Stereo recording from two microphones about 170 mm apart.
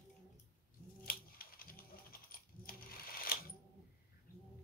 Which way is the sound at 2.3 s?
60° left (ahead or behind).